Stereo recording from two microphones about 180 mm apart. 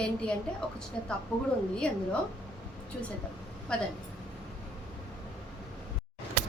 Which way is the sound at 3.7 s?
5° left (ahead or behind).